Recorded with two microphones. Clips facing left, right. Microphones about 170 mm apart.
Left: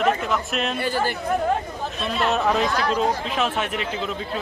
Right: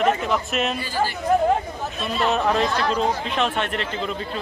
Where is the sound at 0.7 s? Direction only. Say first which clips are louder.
Left 1 dB; 60° left (ahead or behind).